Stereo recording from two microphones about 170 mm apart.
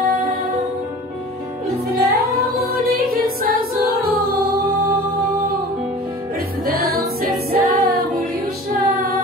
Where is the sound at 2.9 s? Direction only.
60° right (ahead or behind).